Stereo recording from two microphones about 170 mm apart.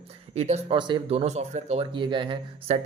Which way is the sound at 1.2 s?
40° right (ahead or behind).